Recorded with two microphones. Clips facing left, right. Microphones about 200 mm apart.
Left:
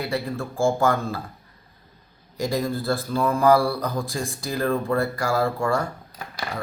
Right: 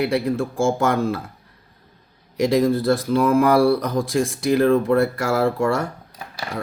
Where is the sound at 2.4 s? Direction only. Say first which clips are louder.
Right 8 dB; 90° right.